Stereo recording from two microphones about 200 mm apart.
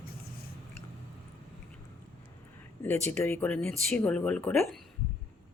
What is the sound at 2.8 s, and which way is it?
Speech, 10° left (ahead or behind).